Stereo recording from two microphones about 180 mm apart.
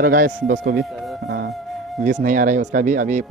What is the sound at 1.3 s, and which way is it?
Music, 60° right (ahead or behind).